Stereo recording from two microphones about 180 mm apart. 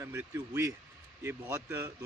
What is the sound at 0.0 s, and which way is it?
Speech, 10° right (ahead or behind).